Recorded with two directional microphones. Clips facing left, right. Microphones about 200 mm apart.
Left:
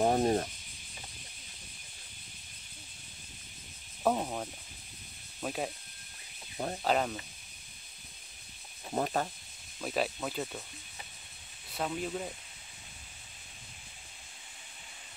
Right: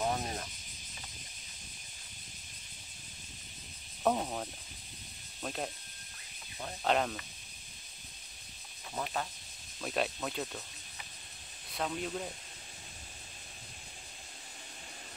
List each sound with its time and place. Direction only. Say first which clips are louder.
0.0 s speech: left 8 dB; 45° left (ahead or behind)
4.0 s speech: left 1 dB; 5° left (ahead or behind)
6.8 s speech: even; 5° left (ahead or behind)
8.9 s speech: left 6 dB; 45° left (ahead or behind)
9.8 s speech: left 1 dB; centre (ahead or behind)
11.7 s speech: left 1 dB; 5° left (ahead or behind)